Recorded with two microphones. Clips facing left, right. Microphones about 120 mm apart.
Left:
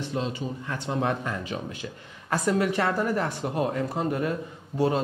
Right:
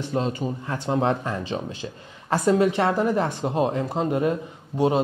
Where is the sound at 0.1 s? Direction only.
45° right (ahead or behind).